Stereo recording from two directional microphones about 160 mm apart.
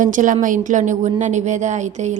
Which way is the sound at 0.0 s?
55° right (ahead or behind).